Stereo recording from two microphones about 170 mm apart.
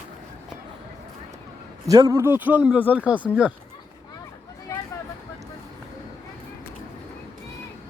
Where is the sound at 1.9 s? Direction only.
20° right (ahead or behind).